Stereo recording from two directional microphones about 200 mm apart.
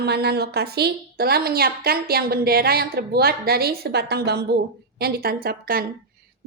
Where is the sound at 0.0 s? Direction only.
55° right (ahead or behind).